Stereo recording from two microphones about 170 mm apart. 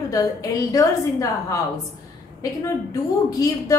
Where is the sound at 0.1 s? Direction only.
20° left (ahead or behind).